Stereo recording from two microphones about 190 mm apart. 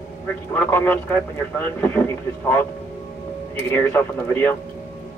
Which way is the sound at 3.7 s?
10° left (ahead or behind).